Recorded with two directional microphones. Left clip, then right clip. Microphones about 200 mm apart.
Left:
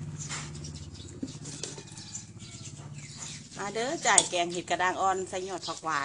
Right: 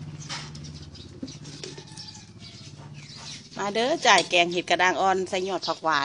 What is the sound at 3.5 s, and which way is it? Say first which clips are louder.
Speech: right 7 dB; 45° right (ahead or behind).